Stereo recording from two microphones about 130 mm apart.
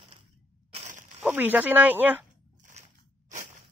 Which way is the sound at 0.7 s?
70° right (ahead or behind).